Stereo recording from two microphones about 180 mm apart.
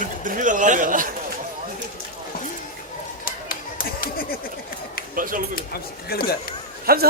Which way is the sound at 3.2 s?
50° left (ahead or behind).